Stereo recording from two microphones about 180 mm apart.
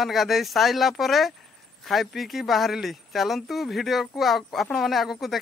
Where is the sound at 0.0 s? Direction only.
Centre (ahead or behind).